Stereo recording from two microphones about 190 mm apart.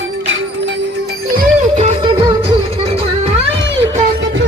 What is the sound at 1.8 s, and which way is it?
Music, 30° right (ahead or behind).